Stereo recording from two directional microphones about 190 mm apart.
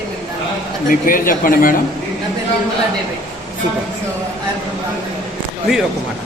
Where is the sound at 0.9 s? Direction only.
45° left (ahead or behind).